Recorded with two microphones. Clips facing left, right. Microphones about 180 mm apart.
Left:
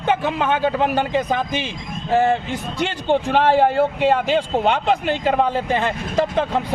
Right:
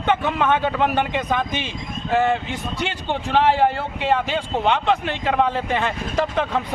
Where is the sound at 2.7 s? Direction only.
45° left (ahead or behind).